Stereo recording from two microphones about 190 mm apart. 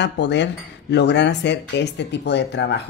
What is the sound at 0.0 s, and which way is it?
Speech, 65° left (ahead or behind).